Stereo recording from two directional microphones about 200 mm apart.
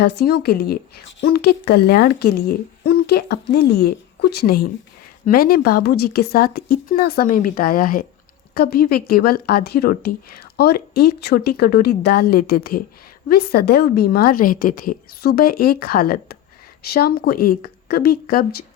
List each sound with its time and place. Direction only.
0.0 s speech: 55° left (ahead or behind)